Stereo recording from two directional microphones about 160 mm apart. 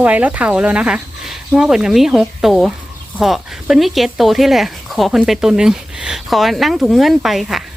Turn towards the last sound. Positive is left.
turn(degrees=0)  # may be behind; listen again after turning